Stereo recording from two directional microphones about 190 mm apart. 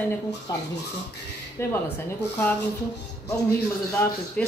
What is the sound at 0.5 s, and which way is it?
A man's voice, 20° left (ahead or behind).